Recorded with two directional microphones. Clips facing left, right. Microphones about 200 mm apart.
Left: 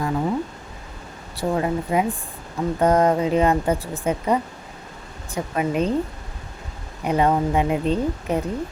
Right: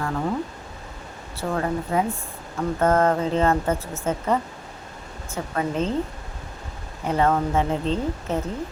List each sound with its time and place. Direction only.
0.0 s a sound: 10° left (ahead or behind)
1.4 s speech: 15° left (ahead or behind)
7.0 s speech: 15° left (ahead or behind)